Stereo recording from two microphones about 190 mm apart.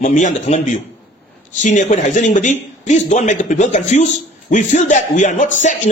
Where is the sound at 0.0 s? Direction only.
40° left (ahead or behind).